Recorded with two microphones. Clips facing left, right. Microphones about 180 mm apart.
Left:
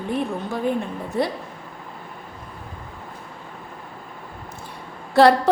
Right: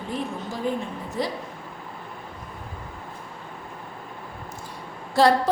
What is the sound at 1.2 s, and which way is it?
Speech, 60° left (ahead or behind).